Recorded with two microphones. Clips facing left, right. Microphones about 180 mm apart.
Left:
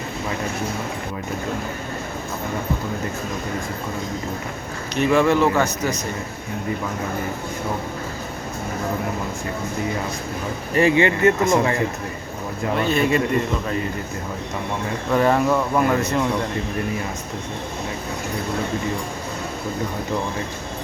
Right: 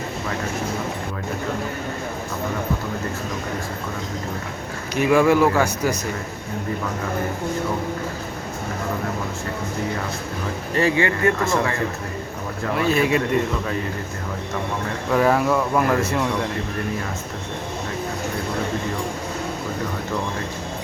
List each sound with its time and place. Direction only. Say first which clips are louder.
4.9 s a man's voice: right 1 dB; 10° right (ahead or behind)
10.8 s speech: left 3 dB; 20° left (ahead or behind)
12.7 s speech: even; 5° right (ahead or behind)
15.1 s speech: even; centre (ahead or behind)